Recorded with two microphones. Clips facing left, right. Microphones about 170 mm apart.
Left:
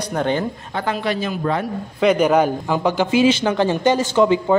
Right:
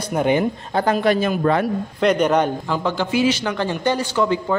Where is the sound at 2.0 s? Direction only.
5° left (ahead or behind).